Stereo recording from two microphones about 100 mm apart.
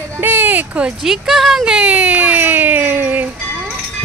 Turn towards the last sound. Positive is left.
turn(degrees=-20)  # may be behind; listen again after turning